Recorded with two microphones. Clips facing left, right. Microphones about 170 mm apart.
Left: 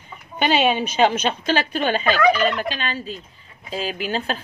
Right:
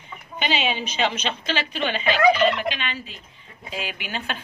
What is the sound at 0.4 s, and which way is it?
A woman's voice, 50° left (ahead or behind).